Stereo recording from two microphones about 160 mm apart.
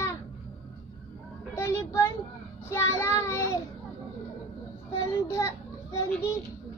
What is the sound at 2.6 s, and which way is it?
Child singing, 15° left (ahead or behind).